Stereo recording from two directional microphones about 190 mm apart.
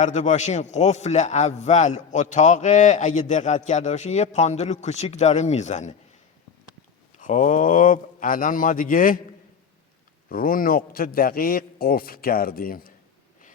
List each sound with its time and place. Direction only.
0.0 s speech: 40° left (ahead or behind)
7.2 s a man's voice: 40° left (ahead or behind)
10.2 s a man's voice: 50° left (ahead or behind)